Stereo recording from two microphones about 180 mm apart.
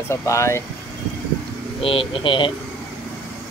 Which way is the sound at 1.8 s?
30° left (ahead or behind).